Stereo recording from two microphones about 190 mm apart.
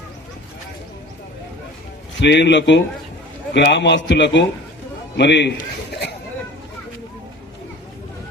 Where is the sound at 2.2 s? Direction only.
65° left (ahead or behind).